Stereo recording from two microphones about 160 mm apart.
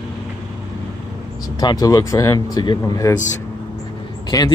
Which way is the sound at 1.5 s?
25° left (ahead or behind).